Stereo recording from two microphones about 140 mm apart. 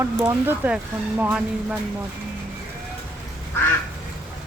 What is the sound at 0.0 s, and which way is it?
Speech, 15° right (ahead or behind).